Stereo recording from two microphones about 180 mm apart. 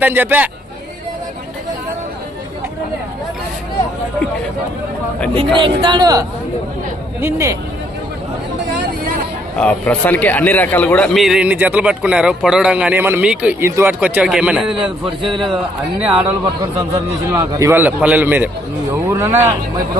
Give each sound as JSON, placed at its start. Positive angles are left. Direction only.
{"t": 0.0, "sound": "a man's voice", "side_deg": -10}
{"t": 5.3, "sound": "a man's voice", "side_deg": -30}
{"t": 9.6, "sound": "a man's voice", "side_deg": 5}